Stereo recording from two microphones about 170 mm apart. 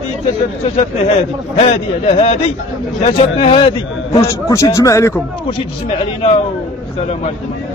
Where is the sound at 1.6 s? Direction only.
35° left (ahead or behind).